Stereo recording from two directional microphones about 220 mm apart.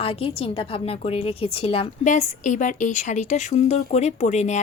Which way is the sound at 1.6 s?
25° left (ahead or behind).